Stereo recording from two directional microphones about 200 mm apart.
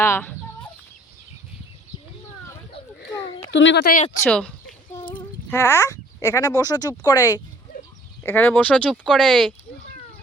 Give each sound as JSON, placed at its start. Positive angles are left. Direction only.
{"t": 0.0, "sound": "chicken", "side_deg": 10}
{"t": 3.5, "sound": "speech", "side_deg": 65}
{"t": 4.2, "sound": "speech", "side_deg": 5}